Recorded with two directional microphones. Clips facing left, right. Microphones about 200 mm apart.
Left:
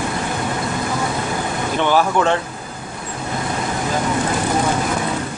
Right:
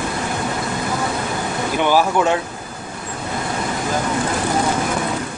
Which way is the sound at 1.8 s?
10° right (ahead or behind).